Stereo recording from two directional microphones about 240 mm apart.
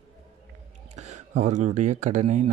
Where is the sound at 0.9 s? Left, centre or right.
Right.